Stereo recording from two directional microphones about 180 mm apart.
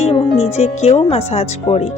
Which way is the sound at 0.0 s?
35° left (ahead or behind).